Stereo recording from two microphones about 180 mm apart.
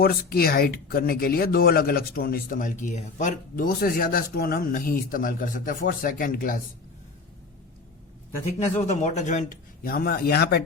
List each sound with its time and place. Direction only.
0.0 s speech: 55° left (ahead or behind)
8.7 s speech: 40° left (ahead or behind); by 10.6 s 65° left (ahead or behind)